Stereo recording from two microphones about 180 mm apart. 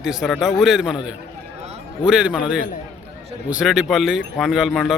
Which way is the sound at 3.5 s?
5° right (ahead or behind).